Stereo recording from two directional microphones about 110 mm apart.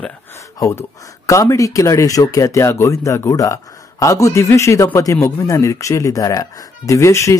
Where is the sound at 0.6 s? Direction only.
25° left (ahead or behind).